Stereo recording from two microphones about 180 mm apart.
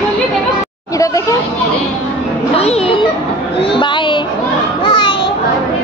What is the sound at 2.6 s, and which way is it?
A child's voice, 35° left (ahead or behind).